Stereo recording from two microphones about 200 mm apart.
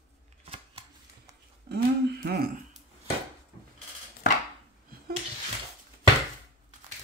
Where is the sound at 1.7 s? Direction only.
50° right (ahead or behind).